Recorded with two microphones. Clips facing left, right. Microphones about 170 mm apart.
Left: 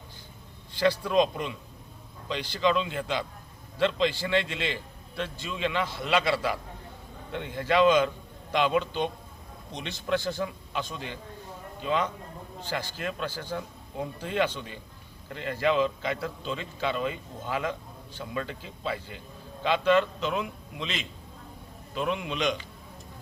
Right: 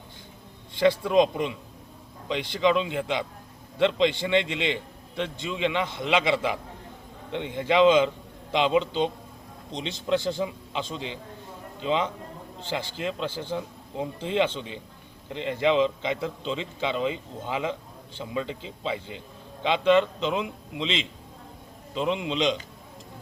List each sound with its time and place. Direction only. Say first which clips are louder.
0.8 s a man's voice: right 3 dB; 20° right (ahead or behind)